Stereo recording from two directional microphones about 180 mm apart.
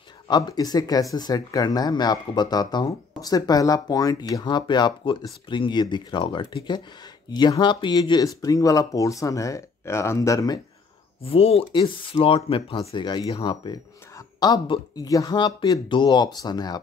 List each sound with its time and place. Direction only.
0.3 s speech: 20° left (ahead or behind)
11.2 s speech: 30° left (ahead or behind)